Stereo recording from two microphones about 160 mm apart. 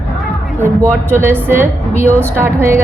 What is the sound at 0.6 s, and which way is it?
A woman's voice, 15° right (ahead or behind).